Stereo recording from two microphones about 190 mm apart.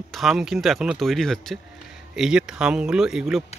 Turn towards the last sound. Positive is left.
turn(degrees=0)  # may be behind; listen again after turning